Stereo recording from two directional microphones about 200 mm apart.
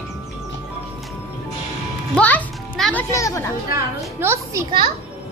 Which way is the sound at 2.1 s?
5° left (ahead or behind).